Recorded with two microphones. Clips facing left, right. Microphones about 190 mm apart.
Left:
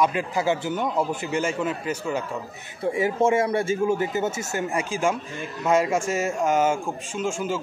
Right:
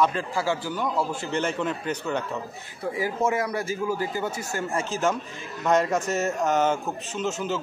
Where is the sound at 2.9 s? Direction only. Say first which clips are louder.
Left 4 dB; 25° left (ahead or behind).